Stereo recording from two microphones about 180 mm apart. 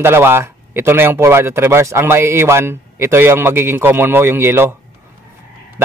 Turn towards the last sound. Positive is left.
turn(degrees=-15)  # may be behind; listen again after turning